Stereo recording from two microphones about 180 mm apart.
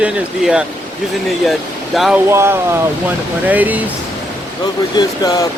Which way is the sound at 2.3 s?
15° right (ahead or behind).